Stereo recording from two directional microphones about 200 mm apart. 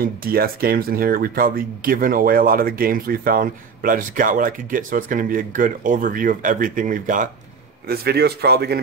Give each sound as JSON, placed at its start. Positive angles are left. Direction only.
{"t": 0.0, "sound": "speech", "side_deg": -50}
{"t": 7.9, "sound": "speech", "side_deg": -50}